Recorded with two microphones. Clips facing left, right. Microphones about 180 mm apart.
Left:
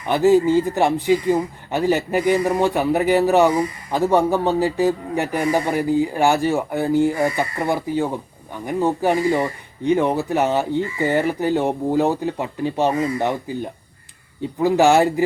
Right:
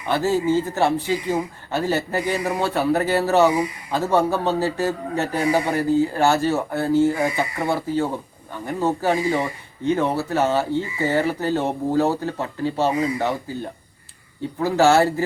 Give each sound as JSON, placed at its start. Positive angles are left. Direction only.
{"t": 0.0, "sound": "speech", "side_deg": 15}